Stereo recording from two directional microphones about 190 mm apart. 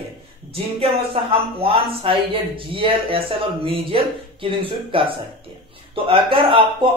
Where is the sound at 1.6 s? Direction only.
30° right (ahead or behind).